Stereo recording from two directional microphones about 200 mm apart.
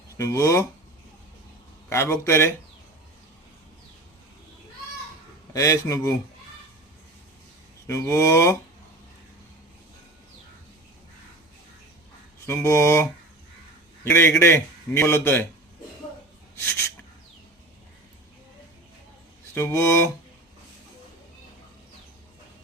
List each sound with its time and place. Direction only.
0.2 s a man's voice: 15° left (ahead or behind)
1.9 s a man's voice: 15° left (ahead or behind)
5.5 s a man's voice: 15° left (ahead or behind)
7.9 s a man's voice: 15° left (ahead or behind)
12.5 s a man's voice: 15° left (ahead or behind)
19.5 s a man's voice: 10° left (ahead or behind)